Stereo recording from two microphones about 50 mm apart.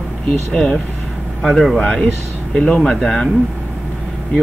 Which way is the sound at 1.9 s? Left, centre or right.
Centre.